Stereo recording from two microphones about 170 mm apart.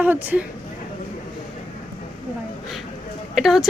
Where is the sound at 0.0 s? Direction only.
10° right (ahead or behind).